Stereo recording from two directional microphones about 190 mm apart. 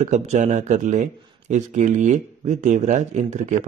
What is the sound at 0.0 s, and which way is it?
Speech, 40° right (ahead or behind).